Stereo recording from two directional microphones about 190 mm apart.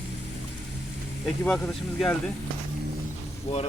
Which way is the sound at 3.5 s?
30° left (ahead or behind).